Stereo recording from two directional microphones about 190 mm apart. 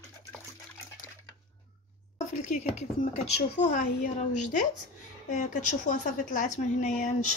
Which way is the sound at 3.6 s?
45° left (ahead or behind).